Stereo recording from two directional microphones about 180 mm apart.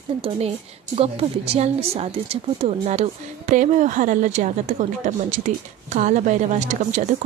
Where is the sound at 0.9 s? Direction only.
35° right (ahead or behind).